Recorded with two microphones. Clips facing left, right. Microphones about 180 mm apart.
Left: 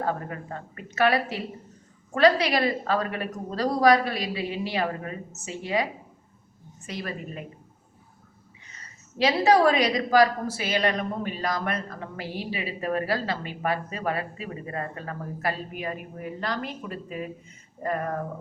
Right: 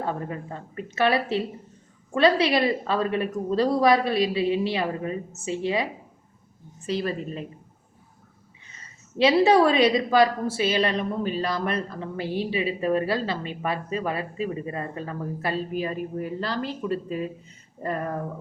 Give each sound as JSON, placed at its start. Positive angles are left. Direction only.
{"t": 0.8, "sound": "a woman's voice", "side_deg": -25}
{"t": 6.8, "sound": "a woman's voice", "side_deg": -30}
{"t": 8.8, "sound": "a woman's voice", "side_deg": -25}